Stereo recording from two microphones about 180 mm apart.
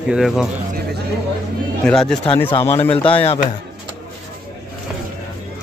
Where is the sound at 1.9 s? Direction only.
5° left (ahead or behind).